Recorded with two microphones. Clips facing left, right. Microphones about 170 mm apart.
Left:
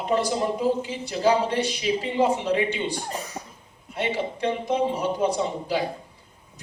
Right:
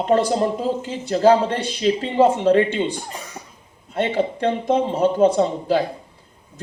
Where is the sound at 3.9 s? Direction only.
55° right (ahead or behind).